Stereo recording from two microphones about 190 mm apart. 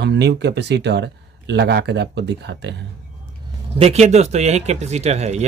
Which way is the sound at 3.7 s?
35° right (ahead or behind).